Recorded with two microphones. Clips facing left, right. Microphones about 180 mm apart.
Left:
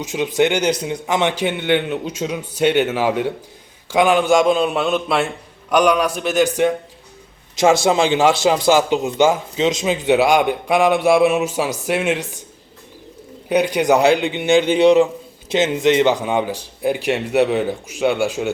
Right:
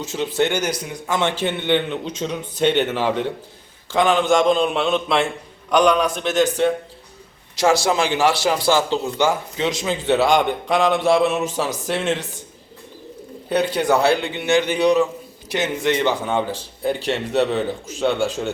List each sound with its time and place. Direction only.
0.0 s a man's voice: 15° left (ahead or behind)
13.5 s a man's voice: 15° left (ahead or behind)